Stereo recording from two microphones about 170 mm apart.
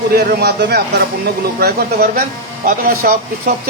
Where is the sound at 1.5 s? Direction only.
60° right (ahead or behind).